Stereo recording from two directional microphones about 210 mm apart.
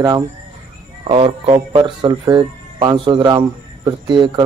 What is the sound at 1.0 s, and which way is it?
Speech, 25° right (ahead or behind).